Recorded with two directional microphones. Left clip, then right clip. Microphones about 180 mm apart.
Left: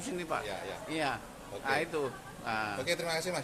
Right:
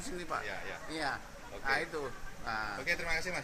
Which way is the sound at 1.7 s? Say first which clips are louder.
Left 2 dB; 10° left (ahead or behind).